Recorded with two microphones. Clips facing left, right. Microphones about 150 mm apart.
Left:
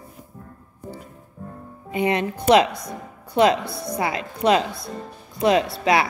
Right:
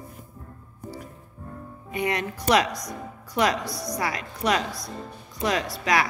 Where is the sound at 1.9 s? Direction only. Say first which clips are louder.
Left 5 dB; 25° left (ahead or behind).